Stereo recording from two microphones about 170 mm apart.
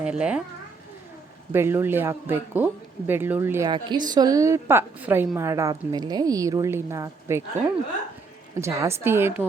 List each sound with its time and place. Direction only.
0.0 s a child's voice: 5° right (ahead or behind)
1.5 s a woman's voice: 15° right (ahead or behind)
3.7 s a woman's voice: 25° right (ahead or behind)